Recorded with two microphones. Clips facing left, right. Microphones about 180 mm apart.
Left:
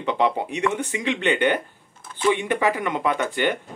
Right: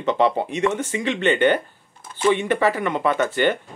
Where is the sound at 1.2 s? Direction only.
10° left (ahead or behind).